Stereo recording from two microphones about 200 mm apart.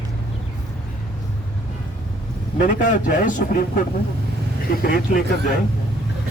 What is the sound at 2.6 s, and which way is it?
A man's voice, 40° left (ahead or behind).